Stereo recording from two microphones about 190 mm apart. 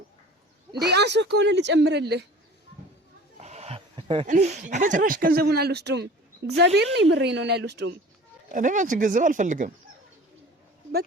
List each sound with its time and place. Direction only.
0.7 s speech: 60° right (ahead or behind)
3.3 s a sound: 35° right (ahead or behind)
4.3 s speech: 35° right (ahead or behind); by 7.9 s 60° right (ahead or behind)
8.5 s speech: 40° right (ahead or behind)